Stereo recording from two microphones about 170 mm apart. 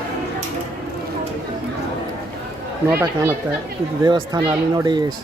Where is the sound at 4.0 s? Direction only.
25° right (ahead or behind).